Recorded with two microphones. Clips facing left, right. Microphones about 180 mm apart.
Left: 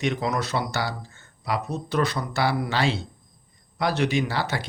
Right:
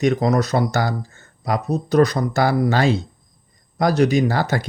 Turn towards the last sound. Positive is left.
turn(degrees=-45)  # may be behind; listen again after turning